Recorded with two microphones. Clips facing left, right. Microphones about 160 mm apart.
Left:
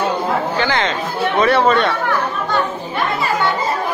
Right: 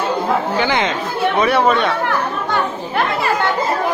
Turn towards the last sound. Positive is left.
turn(degrees=-10)  # may be behind; listen again after turning